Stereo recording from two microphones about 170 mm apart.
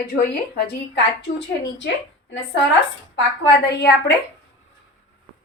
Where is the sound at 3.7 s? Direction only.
90° left.